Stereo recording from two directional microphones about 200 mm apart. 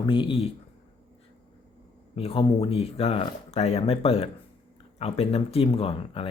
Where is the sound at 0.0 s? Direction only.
25° left (ahead or behind).